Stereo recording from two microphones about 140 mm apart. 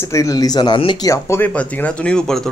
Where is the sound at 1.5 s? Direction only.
10° left (ahead or behind).